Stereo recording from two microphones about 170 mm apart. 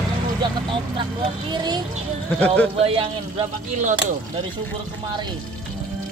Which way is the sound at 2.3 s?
5° left (ahead or behind).